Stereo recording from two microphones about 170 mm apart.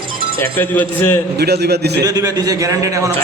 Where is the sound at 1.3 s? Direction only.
70° right (ahead or behind).